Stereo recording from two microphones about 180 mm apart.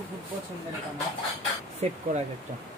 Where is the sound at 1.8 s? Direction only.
35° right (ahead or behind).